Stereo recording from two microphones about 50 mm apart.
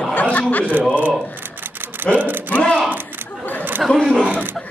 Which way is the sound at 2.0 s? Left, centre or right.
Right.